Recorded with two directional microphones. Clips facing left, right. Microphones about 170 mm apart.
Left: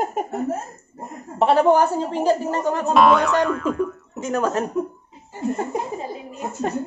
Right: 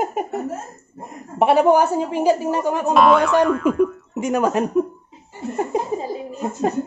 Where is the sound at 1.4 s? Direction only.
10° right (ahead or behind).